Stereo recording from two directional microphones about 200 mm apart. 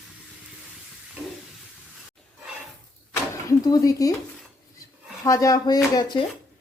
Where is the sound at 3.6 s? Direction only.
20° left (ahead or behind).